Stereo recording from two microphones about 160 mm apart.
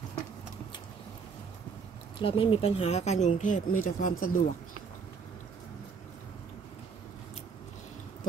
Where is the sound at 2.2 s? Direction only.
35° left (ahead or behind); by 4.4 s 55° left (ahead or behind).